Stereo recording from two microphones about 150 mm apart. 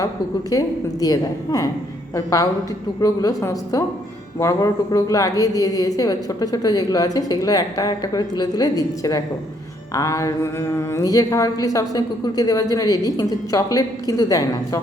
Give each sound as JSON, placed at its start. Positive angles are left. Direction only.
{"t": 0.5, "sound": "a woman's voice", "side_deg": 25}